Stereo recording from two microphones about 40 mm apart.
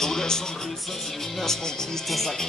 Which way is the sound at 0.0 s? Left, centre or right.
Centre.